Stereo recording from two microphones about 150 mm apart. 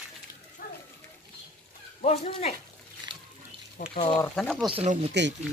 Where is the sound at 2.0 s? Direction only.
45° left (ahead or behind).